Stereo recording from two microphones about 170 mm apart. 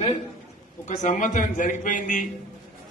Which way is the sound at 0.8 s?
50° left (ahead or behind).